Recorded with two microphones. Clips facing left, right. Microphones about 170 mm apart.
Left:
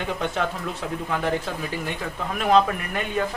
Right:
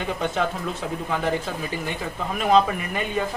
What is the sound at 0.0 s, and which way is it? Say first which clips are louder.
Speech: right 1 dB; centre (ahead or behind).